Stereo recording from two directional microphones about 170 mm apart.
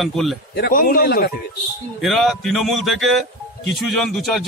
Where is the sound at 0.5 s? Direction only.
65° left (ahead or behind).